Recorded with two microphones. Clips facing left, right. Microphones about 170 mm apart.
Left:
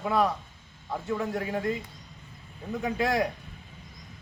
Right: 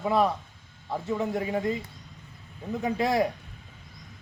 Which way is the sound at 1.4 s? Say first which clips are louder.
Right 2 dB; 20° right (ahead or behind).